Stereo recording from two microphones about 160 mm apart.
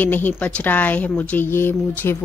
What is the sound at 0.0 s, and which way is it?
A woman's voice, 10° left (ahead or behind).